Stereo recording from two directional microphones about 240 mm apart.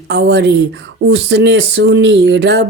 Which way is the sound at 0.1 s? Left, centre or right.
Right.